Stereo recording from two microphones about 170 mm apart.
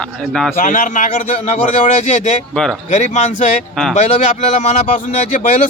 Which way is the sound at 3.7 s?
5° left (ahead or behind).